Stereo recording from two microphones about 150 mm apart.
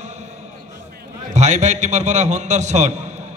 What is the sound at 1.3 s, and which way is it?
A man's voice, 50° right (ahead or behind).